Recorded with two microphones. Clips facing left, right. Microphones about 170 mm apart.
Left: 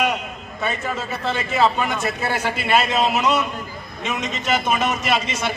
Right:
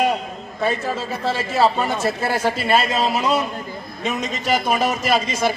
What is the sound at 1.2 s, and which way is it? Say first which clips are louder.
Speech: right 1 dB; 35° right (ahead or behind).